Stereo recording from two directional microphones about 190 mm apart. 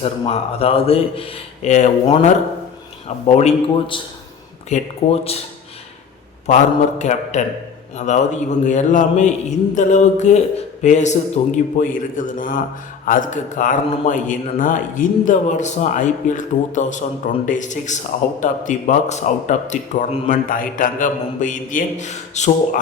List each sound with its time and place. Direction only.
0.0 s a man's voice: 30° left (ahead or behind)
7.0 s a man's voice: 40° left (ahead or behind)